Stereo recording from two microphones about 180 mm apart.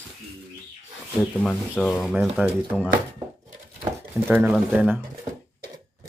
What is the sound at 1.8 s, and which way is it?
Speech, centre (ahead or behind).